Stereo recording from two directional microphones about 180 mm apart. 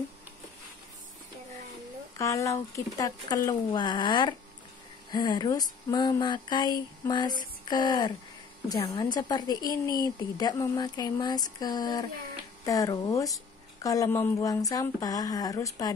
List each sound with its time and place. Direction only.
2.1 s a woman's voice: 15° left (ahead or behind)
7.6 s a sound: 25° left (ahead or behind)
8.6 s a woman's voice: 20° left (ahead or behind)